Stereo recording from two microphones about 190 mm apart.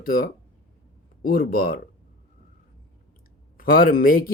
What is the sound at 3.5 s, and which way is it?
Speech, 50° left (ahead or behind).